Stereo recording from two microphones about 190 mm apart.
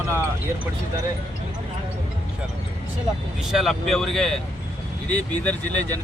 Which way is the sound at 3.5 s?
Centre (ahead or behind).